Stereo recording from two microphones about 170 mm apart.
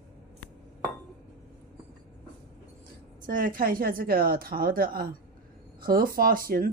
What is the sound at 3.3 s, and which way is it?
Speech, 55° right (ahead or behind).